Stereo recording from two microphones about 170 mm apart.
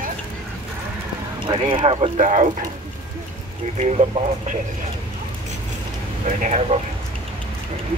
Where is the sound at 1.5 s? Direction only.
30° right (ahead or behind).